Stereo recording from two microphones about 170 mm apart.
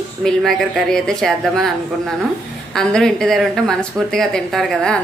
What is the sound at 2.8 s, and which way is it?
Speech, 5° left (ahead or behind).